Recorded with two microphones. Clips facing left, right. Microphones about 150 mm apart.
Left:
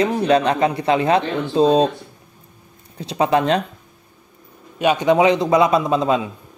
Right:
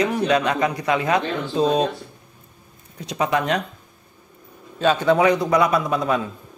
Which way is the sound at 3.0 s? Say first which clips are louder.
Left 4 dB; 30° left (ahead or behind).